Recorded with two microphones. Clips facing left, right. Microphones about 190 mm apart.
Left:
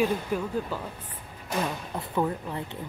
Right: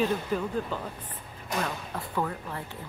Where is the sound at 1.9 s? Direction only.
20° left (ahead or behind).